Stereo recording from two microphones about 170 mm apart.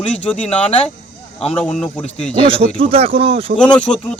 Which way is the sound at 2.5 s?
30° right (ahead or behind).